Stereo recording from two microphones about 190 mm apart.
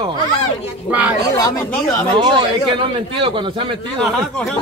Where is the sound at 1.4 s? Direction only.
20° left (ahead or behind).